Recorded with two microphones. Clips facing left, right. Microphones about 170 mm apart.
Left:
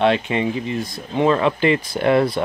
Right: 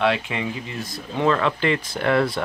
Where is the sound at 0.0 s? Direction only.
25° left (ahead or behind).